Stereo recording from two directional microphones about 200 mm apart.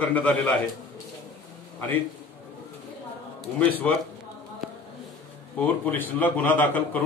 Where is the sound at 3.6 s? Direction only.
10° left (ahead or behind).